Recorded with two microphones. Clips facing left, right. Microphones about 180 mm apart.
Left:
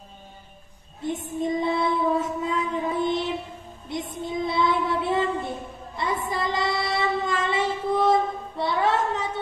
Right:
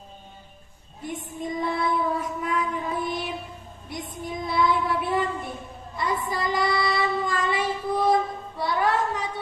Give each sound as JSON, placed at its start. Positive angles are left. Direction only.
{"t": 1.0, "sound": "child singing", "side_deg": 25}